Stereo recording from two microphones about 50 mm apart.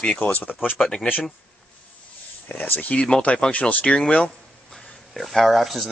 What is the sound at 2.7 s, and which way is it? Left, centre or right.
Speech, left.